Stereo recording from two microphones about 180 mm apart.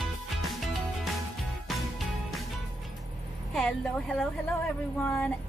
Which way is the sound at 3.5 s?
5° left (ahead or behind).